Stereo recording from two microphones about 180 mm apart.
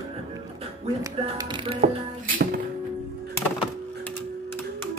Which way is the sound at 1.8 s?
50° right (ahead or behind).